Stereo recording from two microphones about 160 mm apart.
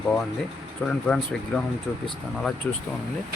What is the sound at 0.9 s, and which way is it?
Speech, 5° left (ahead or behind).